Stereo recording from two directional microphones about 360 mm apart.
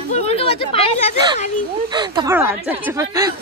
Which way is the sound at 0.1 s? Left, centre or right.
Centre.